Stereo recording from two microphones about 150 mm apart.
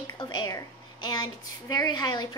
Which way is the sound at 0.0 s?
30° left (ahead or behind).